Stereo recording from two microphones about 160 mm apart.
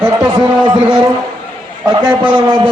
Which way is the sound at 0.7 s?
30° right (ahead or behind).